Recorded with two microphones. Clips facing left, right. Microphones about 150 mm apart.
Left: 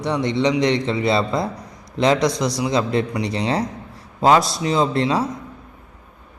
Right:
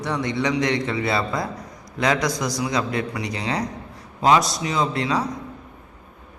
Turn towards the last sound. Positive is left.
turn(degrees=30)  # may be behind; listen again after turning